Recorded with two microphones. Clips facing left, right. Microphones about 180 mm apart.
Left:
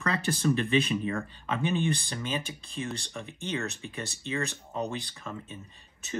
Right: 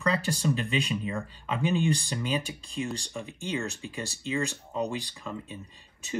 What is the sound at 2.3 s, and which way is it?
Speech, 15° right (ahead or behind).